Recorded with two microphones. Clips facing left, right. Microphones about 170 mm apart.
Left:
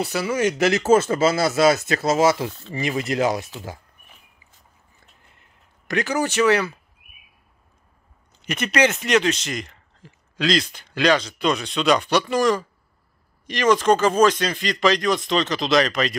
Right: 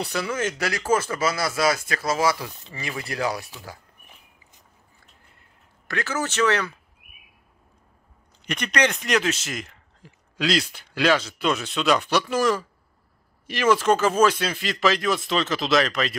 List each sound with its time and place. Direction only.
0.0 s speech: 5° left (ahead or behind); by 3.7 s 20° left (ahead or behind)
5.4 s a sound: 20° left (ahead or behind)
8.4 s speech: 5° left (ahead or behind)